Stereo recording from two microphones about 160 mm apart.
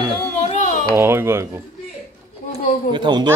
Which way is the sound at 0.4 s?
45° left (ahead or behind).